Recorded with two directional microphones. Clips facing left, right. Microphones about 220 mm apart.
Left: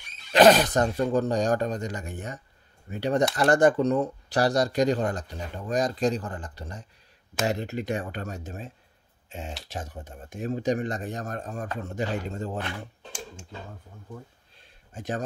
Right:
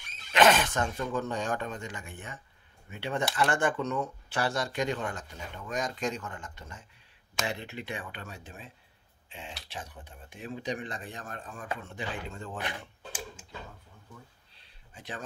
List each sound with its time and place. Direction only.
0.3 s speech: 35° left (ahead or behind)
12.5 s speech: 15° right (ahead or behind)
14.1 s a sound: 45° left (ahead or behind)